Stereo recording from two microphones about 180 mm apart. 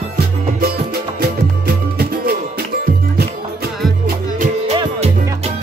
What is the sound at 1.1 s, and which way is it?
Music, 60° right (ahead or behind).